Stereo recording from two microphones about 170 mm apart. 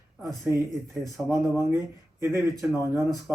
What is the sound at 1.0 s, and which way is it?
Speech, 15° right (ahead or behind).